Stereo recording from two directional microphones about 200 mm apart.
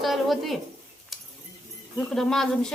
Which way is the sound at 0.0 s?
Centre (ahead or behind).